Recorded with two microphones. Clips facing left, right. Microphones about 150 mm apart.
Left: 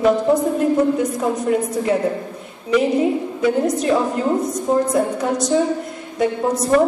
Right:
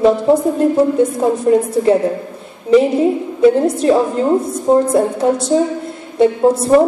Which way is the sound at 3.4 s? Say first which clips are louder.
Right 8 dB; 30° right (ahead or behind).